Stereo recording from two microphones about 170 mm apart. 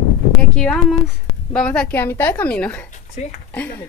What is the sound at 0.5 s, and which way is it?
A woman's voice, 5° left (ahead or behind).